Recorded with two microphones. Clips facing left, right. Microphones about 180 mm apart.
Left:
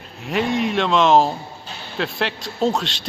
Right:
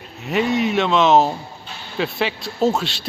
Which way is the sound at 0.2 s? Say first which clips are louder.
Right 2 dB; centre (ahead or behind).